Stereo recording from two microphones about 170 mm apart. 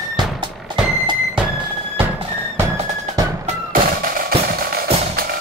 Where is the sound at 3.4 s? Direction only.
55° right (ahead or behind).